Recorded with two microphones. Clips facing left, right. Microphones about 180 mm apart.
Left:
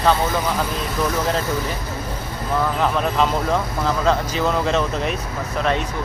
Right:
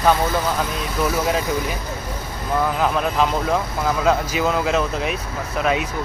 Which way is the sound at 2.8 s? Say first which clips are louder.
Even; 5° right (ahead or behind).